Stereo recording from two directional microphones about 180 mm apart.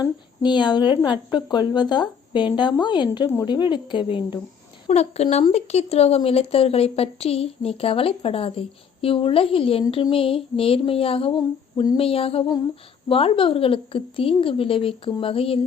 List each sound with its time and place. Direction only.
0.0 s a woman's voice: 25° left (ahead or behind)
4.9 s speech: 35° left (ahead or behind)